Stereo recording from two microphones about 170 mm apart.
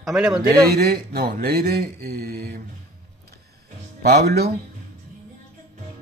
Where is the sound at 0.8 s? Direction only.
65° right (ahead or behind).